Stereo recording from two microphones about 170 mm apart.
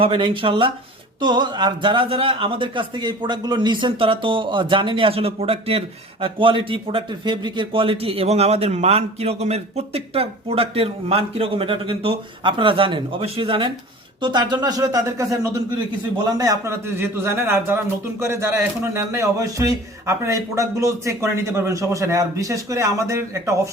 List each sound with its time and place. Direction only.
0.0 s a man's voice: 30° right (ahead or behind)